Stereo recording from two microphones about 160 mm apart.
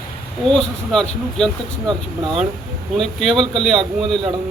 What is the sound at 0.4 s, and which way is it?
Speech, centre (ahead or behind).